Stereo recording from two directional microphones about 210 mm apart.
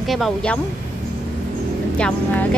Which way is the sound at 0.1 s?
Centre (ahead or behind).